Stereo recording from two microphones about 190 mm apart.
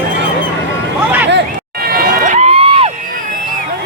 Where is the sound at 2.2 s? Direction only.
40° right (ahead or behind).